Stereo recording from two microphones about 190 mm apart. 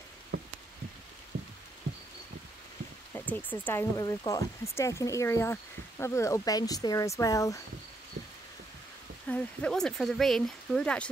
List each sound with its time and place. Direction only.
0.3 s a sound: 90° right
3.1 s speech: 10° left (ahead or behind)
9.3 s speech: 5° left (ahead or behind)